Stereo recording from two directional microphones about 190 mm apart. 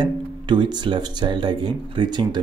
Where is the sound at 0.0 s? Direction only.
25° right (ahead or behind).